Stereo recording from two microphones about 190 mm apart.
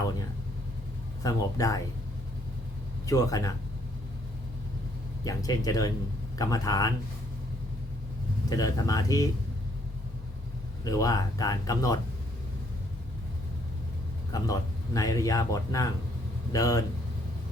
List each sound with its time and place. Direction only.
1.2 s speech: 20° left (ahead or behind)
3.1 s speech: 20° left (ahead or behind)
5.2 s speech: 20° left (ahead or behind)
8.4 s speech: 20° left (ahead or behind)
10.8 s speech: 20° left (ahead or behind)
14.3 s speech: 20° left (ahead or behind)